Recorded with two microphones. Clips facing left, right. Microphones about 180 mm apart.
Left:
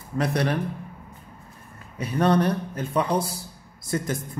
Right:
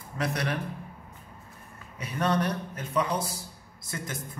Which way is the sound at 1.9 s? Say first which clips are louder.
Left 6 dB; 35° left (ahead or behind).